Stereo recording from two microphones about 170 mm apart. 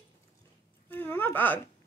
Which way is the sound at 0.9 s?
10° left (ahead or behind).